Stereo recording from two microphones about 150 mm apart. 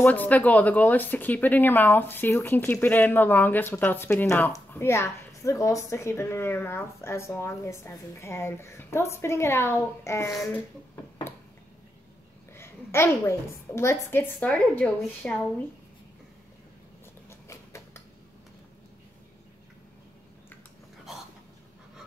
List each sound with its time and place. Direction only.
0.0 s speech: 10° left (ahead or behind)
12.5 s speech: 15° left (ahead or behind)
17.3 s a sound: 20° left (ahead or behind)